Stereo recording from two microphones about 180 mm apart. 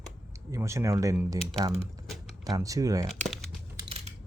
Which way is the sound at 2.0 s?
Centre (ahead or behind).